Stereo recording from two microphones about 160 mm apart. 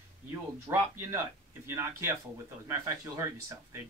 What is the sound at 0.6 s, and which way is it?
Speech, 20° right (ahead or behind).